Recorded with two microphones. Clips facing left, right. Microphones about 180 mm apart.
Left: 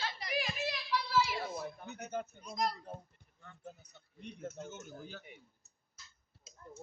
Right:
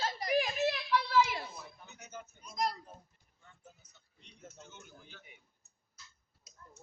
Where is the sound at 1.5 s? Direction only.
55° left (ahead or behind).